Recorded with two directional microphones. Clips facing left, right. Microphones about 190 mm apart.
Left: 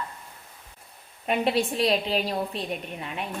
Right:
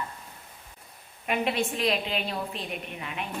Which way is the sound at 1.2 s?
35° left (ahead or behind).